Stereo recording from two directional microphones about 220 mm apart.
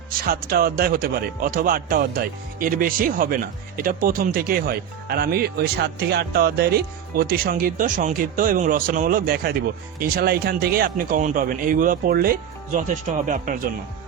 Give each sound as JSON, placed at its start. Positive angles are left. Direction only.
{"t": 0.3, "sound": "speech", "side_deg": -40}